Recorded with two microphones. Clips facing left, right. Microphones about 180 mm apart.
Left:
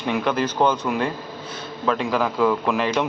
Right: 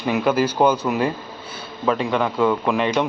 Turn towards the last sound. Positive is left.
turn(degrees=0)  # may be behind; listen again after turning